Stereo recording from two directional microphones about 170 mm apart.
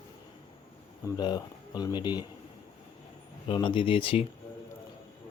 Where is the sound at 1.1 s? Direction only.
25° left (ahead or behind).